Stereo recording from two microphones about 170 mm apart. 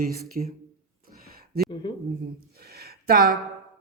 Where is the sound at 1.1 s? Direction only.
65° right (ahead or behind).